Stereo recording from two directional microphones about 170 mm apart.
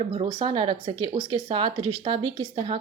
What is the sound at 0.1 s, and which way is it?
Speech, 30° right (ahead or behind).